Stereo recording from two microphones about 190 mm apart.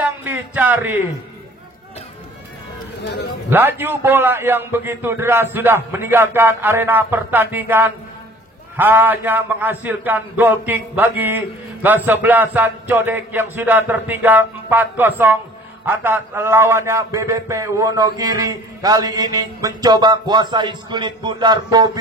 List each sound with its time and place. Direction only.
0.2 s speech: 10° right (ahead or behind)
3.0 s a man's voice: 65° left (ahead or behind)
3.4 s a man's voice: 10° right (ahead or behind)